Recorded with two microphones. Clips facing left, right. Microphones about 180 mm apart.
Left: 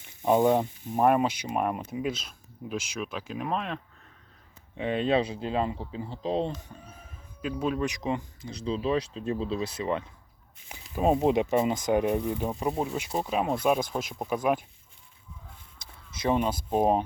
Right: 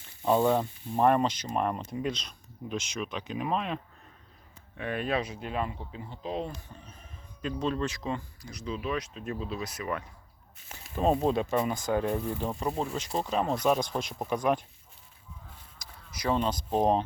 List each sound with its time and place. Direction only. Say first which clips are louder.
0.0 s speech: left 2 dB; 15° left (ahead or behind); by 3.8 s centre (ahead or behind)
4.8 s speech: left 5 dB; 20° left (ahead or behind)
6.7 s speech: left 2 dB; 10° left (ahead or behind); by 10.1 s 25° left (ahead or behind)
10.7 s speech: left 2 dB; 15° left (ahead or behind)
12.9 s speech: left 1 dB; 5° left (ahead or behind)
15.8 s a sound: left 3 dB; 25° left (ahead or behind)
16.4 s speech: left 1 dB; 10° left (ahead or behind)